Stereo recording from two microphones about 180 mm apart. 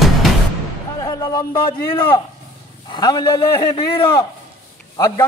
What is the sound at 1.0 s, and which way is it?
A man's voice, 20° left (ahead or behind).